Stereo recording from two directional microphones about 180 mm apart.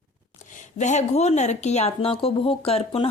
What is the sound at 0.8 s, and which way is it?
Speech, 40° left (ahead or behind).